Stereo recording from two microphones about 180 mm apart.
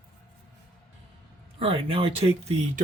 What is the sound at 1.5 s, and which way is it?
Speech, 35° right (ahead or behind).